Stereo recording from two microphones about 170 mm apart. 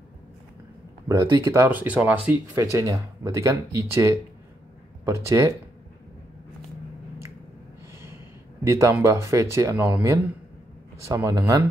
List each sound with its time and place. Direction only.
1.2 s speech: 20° right (ahead or behind)
8.6 s speech: 15° right (ahead or behind)